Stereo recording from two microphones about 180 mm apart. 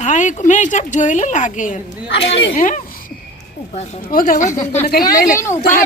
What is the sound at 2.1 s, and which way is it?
Speech, 90° left.